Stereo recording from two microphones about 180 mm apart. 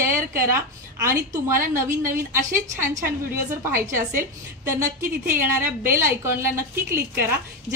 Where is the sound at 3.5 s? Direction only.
15° right (ahead or behind).